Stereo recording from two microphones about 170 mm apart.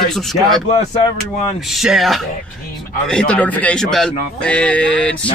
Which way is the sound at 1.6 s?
Centre (ahead or behind).